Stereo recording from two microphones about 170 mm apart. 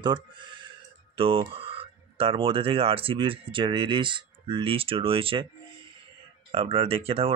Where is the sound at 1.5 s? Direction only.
35° right (ahead or behind).